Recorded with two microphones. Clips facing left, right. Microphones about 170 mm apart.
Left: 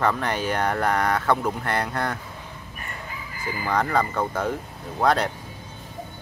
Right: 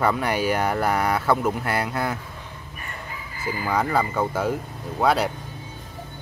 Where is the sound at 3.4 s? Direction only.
5° right (ahead or behind).